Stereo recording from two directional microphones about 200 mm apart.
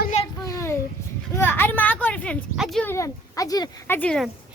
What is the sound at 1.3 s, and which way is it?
Speech, 10° left (ahead or behind).